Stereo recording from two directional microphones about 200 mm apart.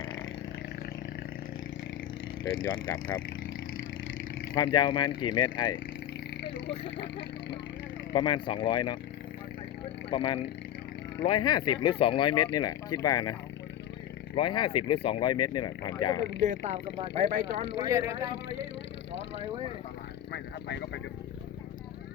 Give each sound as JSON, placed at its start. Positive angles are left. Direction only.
{"t": 3.4, "sound": "a sound", "side_deg": 75}
{"t": 4.5, "sound": "speech", "side_deg": 20}
{"t": 6.8, "sound": "speech", "side_deg": 25}
{"t": 10.1, "sound": "speech", "side_deg": 25}
{"t": 14.3, "sound": "speech", "side_deg": 25}
{"t": 16.4, "sound": "speech", "side_deg": -35}
{"t": 17.8, "sound": "speech", "side_deg": -15}
{"t": 20.3, "sound": "a sound", "side_deg": 60}